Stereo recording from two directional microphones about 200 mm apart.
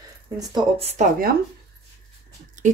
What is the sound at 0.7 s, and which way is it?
Speech, 30° right (ahead or behind).